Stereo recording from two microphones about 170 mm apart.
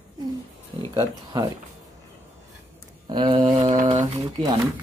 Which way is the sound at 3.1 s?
25° right (ahead or behind).